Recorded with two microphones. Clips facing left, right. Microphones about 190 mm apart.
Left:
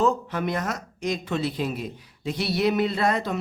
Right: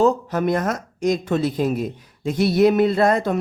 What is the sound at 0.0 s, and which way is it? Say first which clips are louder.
Speech: right 5 dB; 40° right (ahead or behind).